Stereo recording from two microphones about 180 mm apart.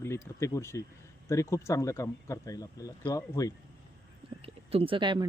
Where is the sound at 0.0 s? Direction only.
15° left (ahead or behind).